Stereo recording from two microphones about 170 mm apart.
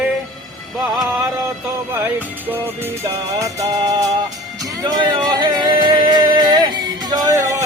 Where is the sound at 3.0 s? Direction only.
20° right (ahead or behind).